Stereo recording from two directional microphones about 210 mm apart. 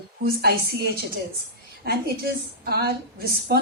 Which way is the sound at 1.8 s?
50° right (ahead or behind).